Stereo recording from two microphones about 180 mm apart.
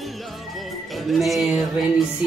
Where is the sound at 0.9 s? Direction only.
Centre (ahead or behind).